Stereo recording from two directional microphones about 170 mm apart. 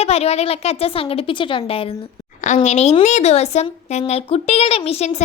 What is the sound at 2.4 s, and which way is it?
Speech, 45° left (ahead or behind).